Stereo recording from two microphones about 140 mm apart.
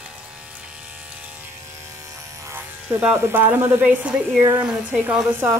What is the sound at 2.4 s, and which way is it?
Speech, 15° right (ahead or behind).